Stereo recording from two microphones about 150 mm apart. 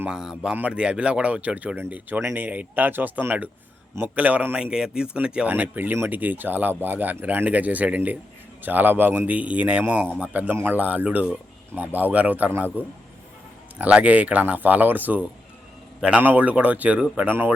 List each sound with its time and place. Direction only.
0.0 s a man's voice: 5° right (ahead or behind)